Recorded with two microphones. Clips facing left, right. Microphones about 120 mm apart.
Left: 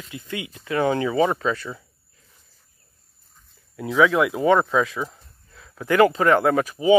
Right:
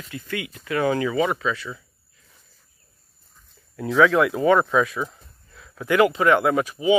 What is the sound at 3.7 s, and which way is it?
Speech, 15° left (ahead or behind).